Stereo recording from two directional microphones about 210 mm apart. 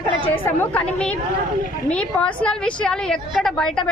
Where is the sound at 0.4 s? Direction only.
10° left (ahead or behind).